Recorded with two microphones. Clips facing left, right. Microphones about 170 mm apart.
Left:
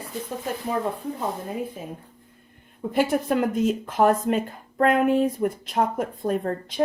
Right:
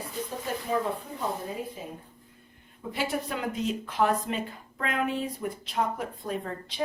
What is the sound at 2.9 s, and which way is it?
Speech, 50° left (ahead or behind).